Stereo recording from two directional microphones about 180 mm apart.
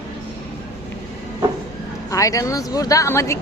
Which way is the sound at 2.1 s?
20° left (ahead or behind).